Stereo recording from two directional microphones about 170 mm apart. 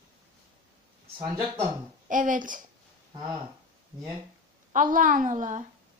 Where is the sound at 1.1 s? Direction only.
30° right (ahead or behind).